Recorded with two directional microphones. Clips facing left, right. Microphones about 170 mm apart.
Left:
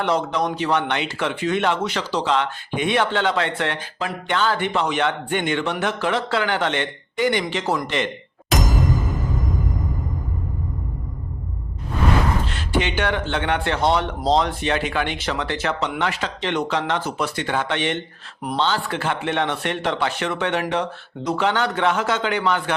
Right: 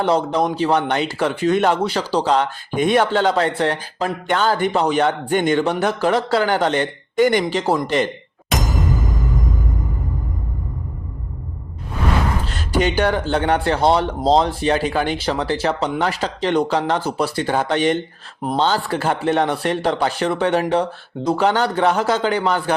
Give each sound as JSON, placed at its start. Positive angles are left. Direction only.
{"t": 0.0, "sound": "speech", "side_deg": -30}
{"t": 7.5, "sound": "speech", "side_deg": -35}
{"t": 8.5, "sound": "music", "side_deg": 0}
{"t": 12.5, "sound": "speech", "side_deg": -40}